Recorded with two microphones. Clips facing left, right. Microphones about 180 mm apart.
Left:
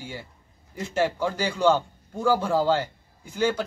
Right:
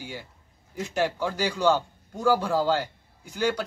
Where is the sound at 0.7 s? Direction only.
10° right (ahead or behind).